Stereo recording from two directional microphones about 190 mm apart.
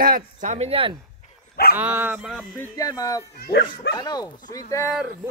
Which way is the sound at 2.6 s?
20° left (ahead or behind).